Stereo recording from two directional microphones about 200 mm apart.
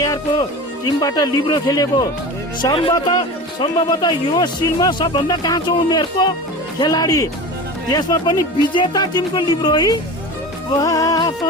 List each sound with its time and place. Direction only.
0.0 s a man's voice: 20° left (ahead or behind)